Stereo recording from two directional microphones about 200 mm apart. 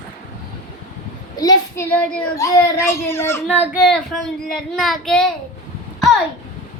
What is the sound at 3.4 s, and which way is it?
Speech, 10° right (ahead or behind).